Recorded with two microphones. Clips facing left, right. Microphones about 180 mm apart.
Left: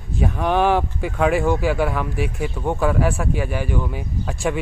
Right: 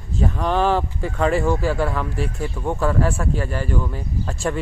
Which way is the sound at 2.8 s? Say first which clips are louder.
Left 1 dB; 5° left (ahead or behind).